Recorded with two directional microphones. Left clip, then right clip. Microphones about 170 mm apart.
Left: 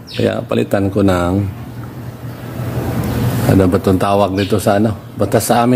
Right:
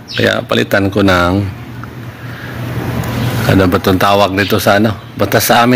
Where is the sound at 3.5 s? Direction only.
Centre (ahead or behind).